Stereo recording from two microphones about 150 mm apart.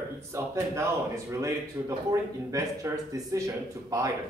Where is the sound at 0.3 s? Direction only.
20° right (ahead or behind).